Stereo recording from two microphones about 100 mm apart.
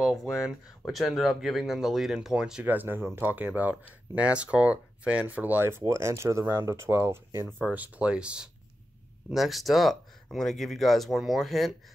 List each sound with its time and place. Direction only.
0.0 s a sound: centre (ahead or behind)
0.8 s speech: centre (ahead or behind)
2.7 s speech: 20° right (ahead or behind)
7.6 s speech: 15° right (ahead or behind)